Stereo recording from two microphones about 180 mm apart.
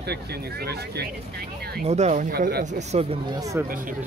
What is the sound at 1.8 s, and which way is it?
Speech, 40° right (ahead or behind).